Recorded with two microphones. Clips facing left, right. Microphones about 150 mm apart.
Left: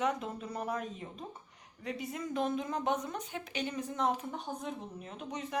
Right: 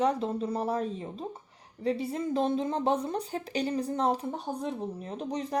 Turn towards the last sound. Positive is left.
turn(degrees=-35)  # may be behind; listen again after turning